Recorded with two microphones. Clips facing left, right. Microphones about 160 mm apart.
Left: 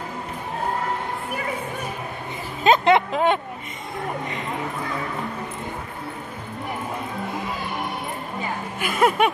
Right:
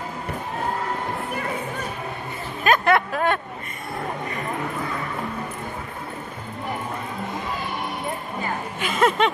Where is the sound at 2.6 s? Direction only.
20° left (ahead or behind).